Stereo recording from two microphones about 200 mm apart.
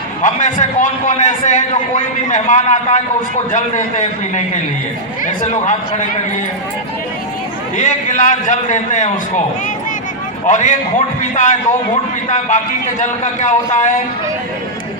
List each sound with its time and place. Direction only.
0.2 s a man's voice: 35° left (ahead or behind)
7.8 s a man's voice: 40° left (ahead or behind)
10.4 s a man's voice: 40° left (ahead or behind)